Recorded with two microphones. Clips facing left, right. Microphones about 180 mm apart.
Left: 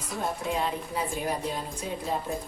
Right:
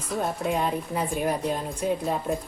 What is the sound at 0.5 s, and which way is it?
A woman's voice, 55° right (ahead or behind).